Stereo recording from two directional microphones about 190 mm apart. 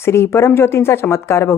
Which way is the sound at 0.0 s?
15° left (ahead or behind).